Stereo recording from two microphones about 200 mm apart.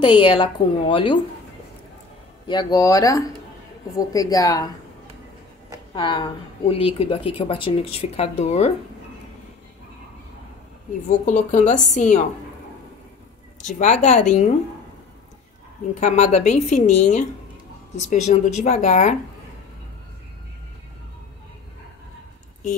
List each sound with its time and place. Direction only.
0.2 s speech: 25° left (ahead or behind)
2.4 s speech: 20° left (ahead or behind)
5.9 s speech: 25° left (ahead or behind)
11.1 s a woman's voice: 35° left (ahead or behind)
13.7 s a woman's voice: 35° left (ahead or behind)
16.0 s a woman's voice: 35° left (ahead or behind)